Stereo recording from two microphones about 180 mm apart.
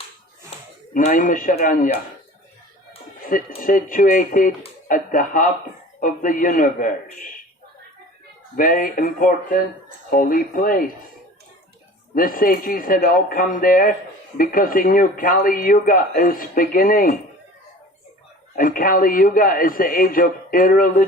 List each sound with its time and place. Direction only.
0.9 s speech: 45° left (ahead or behind)
3.6 s speech: 50° left (ahead or behind)
8.5 s speech: 50° left (ahead or behind)
12.1 s speech: 50° left (ahead or behind)
18.5 s speech: 50° left (ahead or behind)